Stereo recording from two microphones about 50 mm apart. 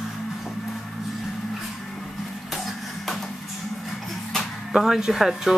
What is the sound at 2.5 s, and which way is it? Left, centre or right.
Music, centre.